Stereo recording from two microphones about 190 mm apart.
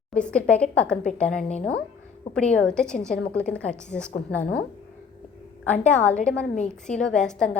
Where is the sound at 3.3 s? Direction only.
5° left (ahead or behind).